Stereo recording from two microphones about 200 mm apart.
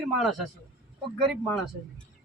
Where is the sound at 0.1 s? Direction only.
Centre (ahead or behind).